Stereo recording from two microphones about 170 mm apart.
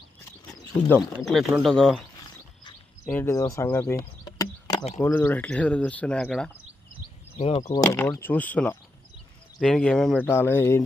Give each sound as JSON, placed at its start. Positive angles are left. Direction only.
{"t": 0.9, "sound": "speech", "side_deg": 0}
{"t": 3.1, "sound": "speech", "side_deg": 15}
{"t": 4.3, "sound": "a sound", "side_deg": 25}
{"t": 5.0, "sound": "speech", "side_deg": 10}
{"t": 7.3, "sound": "speech", "side_deg": 35}